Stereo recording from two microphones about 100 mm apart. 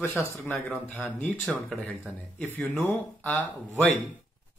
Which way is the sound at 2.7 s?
20° left (ahead or behind).